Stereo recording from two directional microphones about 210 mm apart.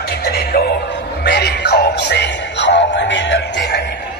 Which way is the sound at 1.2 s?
50° left (ahead or behind).